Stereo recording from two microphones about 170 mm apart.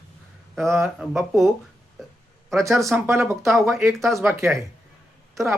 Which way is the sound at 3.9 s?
Centre (ahead or behind).